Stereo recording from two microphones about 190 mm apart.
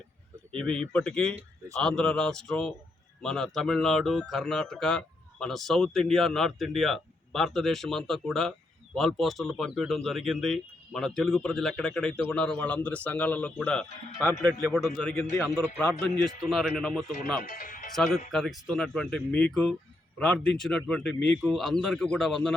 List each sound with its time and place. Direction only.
0.5 s speech: 5° left (ahead or behind)
17.4 s speech: 50° left (ahead or behind)
17.9 s speech: centre (ahead or behind)